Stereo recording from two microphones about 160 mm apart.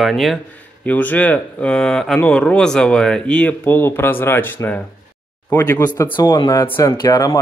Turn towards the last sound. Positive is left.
turn(degrees=20)  # may be behind; listen again after turning